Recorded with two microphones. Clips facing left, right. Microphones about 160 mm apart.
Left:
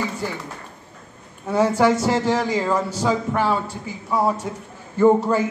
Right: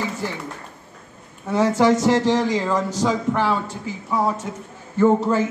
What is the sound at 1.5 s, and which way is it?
A man's voice, 10° left (ahead or behind).